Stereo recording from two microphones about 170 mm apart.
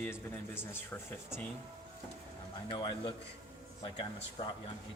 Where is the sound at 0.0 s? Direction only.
15° left (ahead or behind).